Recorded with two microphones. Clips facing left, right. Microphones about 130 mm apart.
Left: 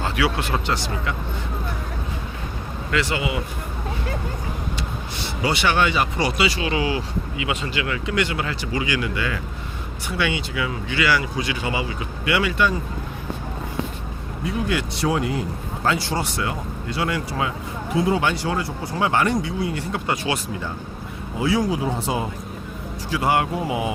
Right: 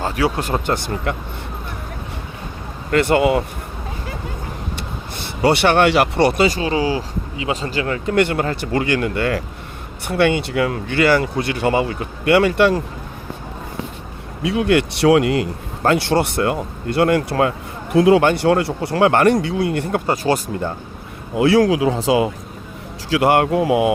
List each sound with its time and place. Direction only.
0.3 s speech: 45° right (ahead or behind)
2.9 s speech: 55° right (ahead or behind)
5.2 s speech: 60° right (ahead or behind)
14.4 s speech: 75° right (ahead or behind)
15.8 s speech: 60° right (ahead or behind)
17.9 s speech: 70° right (ahead or behind)
20.1 s speech: 40° right (ahead or behind)
21.3 s speech: 70° right (ahead or behind); by 22.3 s 90° right
23.0 s speech: 75° right (ahead or behind)